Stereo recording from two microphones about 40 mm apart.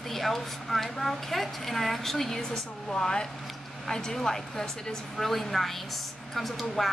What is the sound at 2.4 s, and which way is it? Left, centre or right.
A woman's voice, centre.